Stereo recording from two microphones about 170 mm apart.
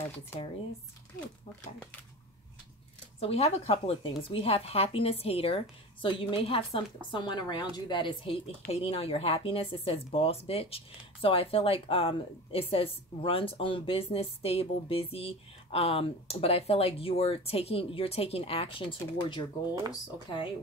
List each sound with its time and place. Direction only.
0.3 s speech: 15° left (ahead or behind)
3.2 s speech: 35° left (ahead or behind)